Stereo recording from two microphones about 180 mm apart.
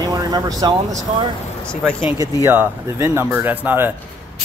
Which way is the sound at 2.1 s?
15° right (ahead or behind).